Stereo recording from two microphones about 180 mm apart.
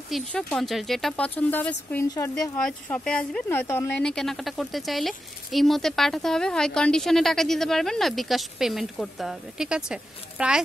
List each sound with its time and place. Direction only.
0.1 s a woman's voice: 5° left (ahead or behind)
2.5 s speech: 5° left (ahead or behind)